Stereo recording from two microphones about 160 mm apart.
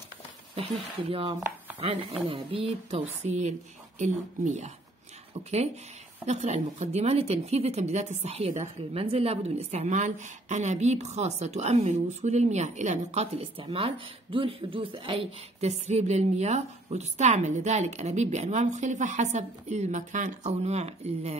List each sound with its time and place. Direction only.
0.6 s speech: 35° right (ahead or behind)
6.2 s speech: 45° right (ahead or behind)